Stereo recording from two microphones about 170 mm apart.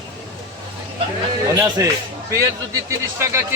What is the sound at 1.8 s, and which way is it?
Speech, 20° right (ahead or behind).